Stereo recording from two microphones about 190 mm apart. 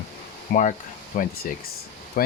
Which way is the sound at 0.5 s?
50° left (ahead or behind).